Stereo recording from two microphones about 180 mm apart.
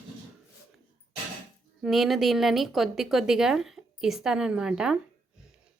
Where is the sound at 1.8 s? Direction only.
Centre (ahead or behind).